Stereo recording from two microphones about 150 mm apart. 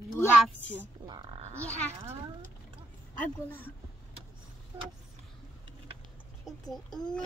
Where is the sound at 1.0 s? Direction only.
30° right (ahead or behind).